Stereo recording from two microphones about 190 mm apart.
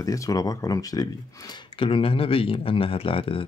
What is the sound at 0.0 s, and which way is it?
Speech, 20° left (ahead or behind).